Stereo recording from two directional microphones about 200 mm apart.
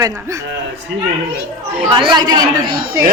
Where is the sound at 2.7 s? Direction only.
50° right (ahead or behind).